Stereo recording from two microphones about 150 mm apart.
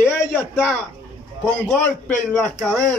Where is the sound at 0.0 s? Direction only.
15° left (ahead or behind).